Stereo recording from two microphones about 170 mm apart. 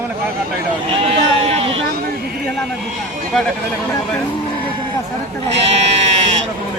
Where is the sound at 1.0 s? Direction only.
35° right (ahead or behind).